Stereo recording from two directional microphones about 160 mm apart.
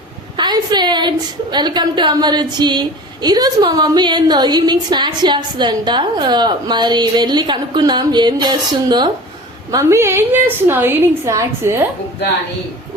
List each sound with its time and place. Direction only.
0.3 s a woman's voice: 25° right (ahead or behind)
9.7 s a woman's voice: 15° right (ahead or behind)